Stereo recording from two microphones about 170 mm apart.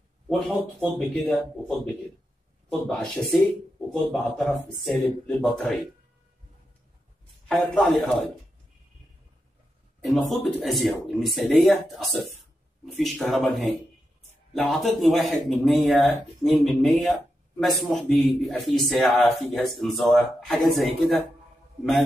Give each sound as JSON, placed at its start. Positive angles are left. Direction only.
{"t": 0.3, "sound": "speech", "side_deg": 0}
{"t": 2.9, "sound": "speech", "side_deg": 0}
{"t": 7.4, "sound": "speech", "side_deg": 5}
{"t": 10.0, "sound": "speech", "side_deg": 0}